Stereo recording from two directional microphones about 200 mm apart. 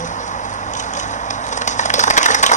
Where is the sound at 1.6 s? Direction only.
35° left (ahead or behind).